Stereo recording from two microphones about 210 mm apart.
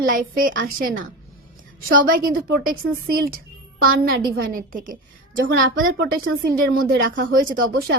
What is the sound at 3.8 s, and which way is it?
A woman's voice, 45° right (ahead or behind).